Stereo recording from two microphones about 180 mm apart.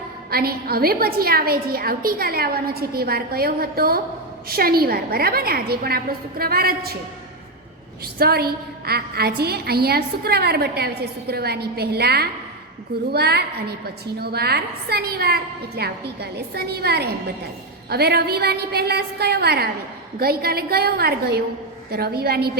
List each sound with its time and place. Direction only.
0.3 s a woman's voice: 55° right (ahead or behind)
8.0 s a woman's voice: 60° right (ahead or behind)